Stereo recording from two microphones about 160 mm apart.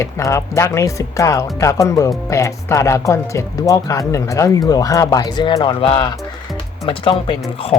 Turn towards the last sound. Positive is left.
turn(degrees=35)  # may be behind; listen again after turning